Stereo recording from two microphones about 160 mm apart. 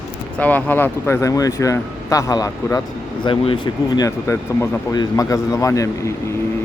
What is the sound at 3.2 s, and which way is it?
Speech, 35° left (ahead or behind).